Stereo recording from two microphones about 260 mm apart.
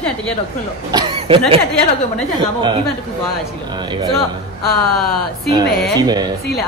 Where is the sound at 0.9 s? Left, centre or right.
Right.